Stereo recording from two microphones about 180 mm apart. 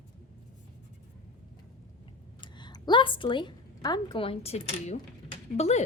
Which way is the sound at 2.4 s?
25° left (ahead or behind).